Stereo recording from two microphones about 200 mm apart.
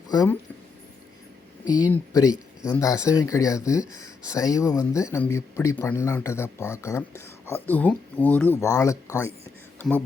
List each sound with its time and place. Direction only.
0.1 s speech: 20° left (ahead or behind)
1.6 s speech: 20° left (ahead or behind)
9.8 s speech: 5° left (ahead or behind)